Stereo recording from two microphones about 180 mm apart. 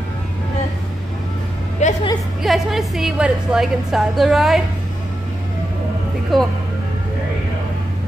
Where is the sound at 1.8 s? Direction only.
40° left (ahead or behind).